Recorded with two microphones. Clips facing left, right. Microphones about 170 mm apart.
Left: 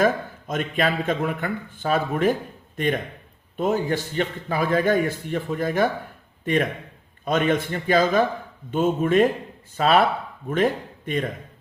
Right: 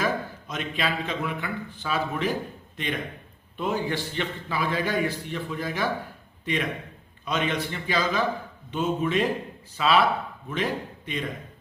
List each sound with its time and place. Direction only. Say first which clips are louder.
0.0 s a man's voice: left 6 dB; 50° left (ahead or behind)